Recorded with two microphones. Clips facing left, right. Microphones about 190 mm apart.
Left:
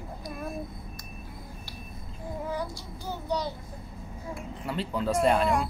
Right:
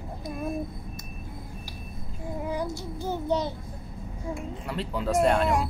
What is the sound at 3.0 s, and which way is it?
Speech, 25° right (ahead or behind).